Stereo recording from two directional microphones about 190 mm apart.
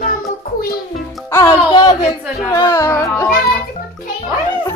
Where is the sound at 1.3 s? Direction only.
20° left (ahead or behind).